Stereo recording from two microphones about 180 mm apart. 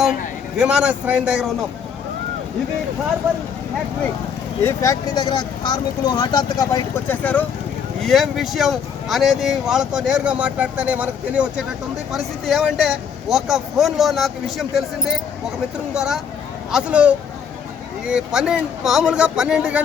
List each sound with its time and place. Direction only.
0.5 s speech: 5° right (ahead or behind)
4.6 s speech: 15° left (ahead or behind)
8.0 s speech: centre (ahead or behind)